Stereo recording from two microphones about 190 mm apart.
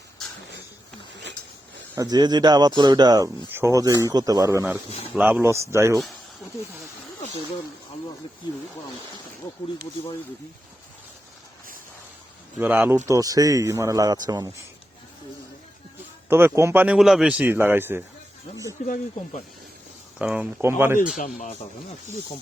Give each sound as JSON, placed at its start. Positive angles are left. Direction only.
{"t": 2.0, "sound": "a man's voice", "side_deg": -20}
{"t": 12.5, "sound": "a man's voice", "side_deg": -10}
{"t": 16.3, "sound": "a man's voice", "side_deg": -15}
{"t": 20.1, "sound": "a man's voice", "side_deg": -5}
{"t": 21.2, "sound": "speech", "side_deg": 45}